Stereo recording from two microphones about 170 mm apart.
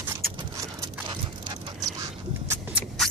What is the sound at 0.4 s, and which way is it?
Dog, 25° right (ahead or behind).